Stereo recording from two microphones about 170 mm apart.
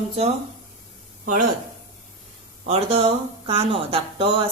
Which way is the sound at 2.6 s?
35° right (ahead or behind).